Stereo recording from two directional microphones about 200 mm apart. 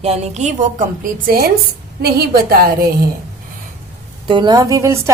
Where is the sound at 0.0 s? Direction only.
30° right (ahead or behind); by 2.9 s 50° right (ahead or behind).